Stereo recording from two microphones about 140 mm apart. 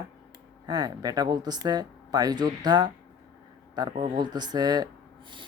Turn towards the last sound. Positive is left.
turn(degrees=-30)  # may be behind; listen again after turning